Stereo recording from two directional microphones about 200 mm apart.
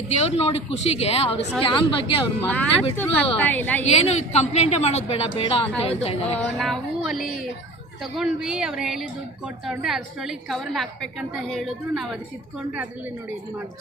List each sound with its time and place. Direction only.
0.1 s a woman's voice: 30° left (ahead or behind)
2.4 s a woman's voice: 5° left (ahead or behind)
3.8 s a woman's voice: 35° left (ahead or behind)
6.4 s a woman's voice: centre (ahead or behind)